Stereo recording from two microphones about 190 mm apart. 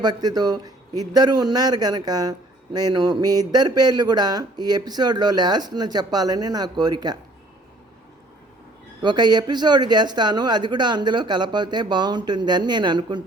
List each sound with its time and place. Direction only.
0.0 s a man's voice: 20° right (ahead or behind)
9.0 s a man's voice: 20° right (ahead or behind)